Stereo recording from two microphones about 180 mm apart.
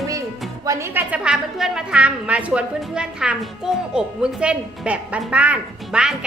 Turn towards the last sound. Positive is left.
turn(degrees=-5)  # may be behind; listen again after turning